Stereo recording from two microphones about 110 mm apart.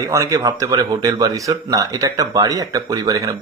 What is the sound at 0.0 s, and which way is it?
Speech, 30° right (ahead or behind).